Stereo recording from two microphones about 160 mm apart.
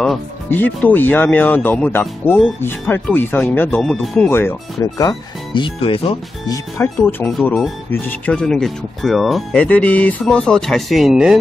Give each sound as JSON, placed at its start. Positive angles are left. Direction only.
{"t": 0.0, "sound": "speech", "side_deg": 5}
{"t": 4.9, "sound": "speech", "side_deg": 25}
{"t": 6.5, "sound": "speech", "side_deg": 15}